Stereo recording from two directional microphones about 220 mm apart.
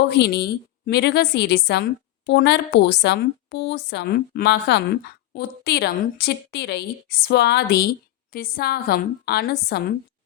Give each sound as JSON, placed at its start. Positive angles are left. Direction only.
{"t": 0.1, "sound": "a woman's voice", "side_deg": 45}